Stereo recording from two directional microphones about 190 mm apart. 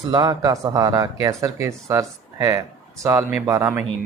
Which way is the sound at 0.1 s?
20° right (ahead or behind).